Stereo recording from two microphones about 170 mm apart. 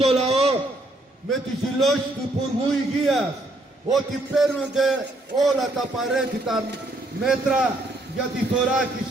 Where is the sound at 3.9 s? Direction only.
Centre (ahead or behind).